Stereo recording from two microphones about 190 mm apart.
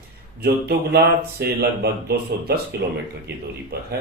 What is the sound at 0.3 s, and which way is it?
Speech, 55° right (ahead or behind).